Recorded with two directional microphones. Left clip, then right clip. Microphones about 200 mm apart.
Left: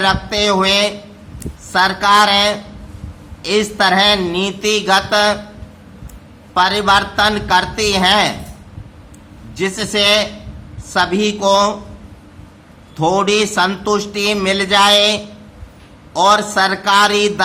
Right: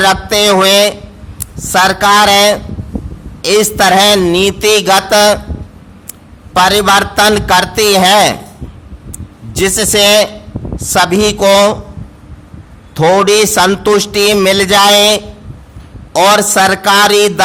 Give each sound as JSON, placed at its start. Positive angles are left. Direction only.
{"t": 0.0, "sound": "a man's voice", "side_deg": -50}
{"t": 6.5, "sound": "a man's voice", "side_deg": -55}
{"t": 9.6, "sound": "a man's voice", "side_deg": -55}
{"t": 13.0, "sound": "a man's voice", "side_deg": -45}